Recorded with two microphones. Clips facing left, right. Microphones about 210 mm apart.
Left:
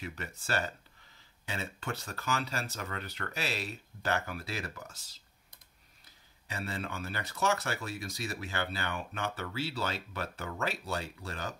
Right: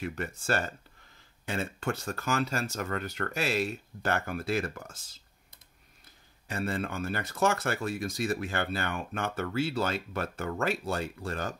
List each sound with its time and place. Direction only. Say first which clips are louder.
0.0 s speech: right 7 dB; 50° right (ahead or behind)
6.4 s speech: right 6 dB; 50° right (ahead or behind)